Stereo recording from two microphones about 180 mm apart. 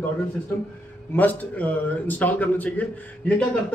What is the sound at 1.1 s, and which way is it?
A man's voice, 10° left (ahead or behind).